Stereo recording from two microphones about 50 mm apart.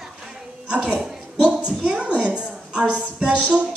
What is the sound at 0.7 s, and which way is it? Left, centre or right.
A woman's voice, right.